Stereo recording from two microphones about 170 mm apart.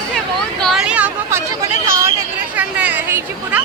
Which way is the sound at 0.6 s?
Centre (ahead or behind).